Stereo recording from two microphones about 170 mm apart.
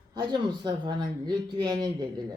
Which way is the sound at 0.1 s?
25° right (ahead or behind).